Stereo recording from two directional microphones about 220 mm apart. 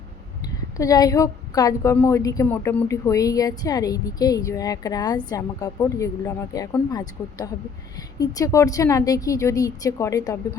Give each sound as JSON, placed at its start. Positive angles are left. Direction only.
{"t": 0.4, "sound": "a woman's voice", "side_deg": 15}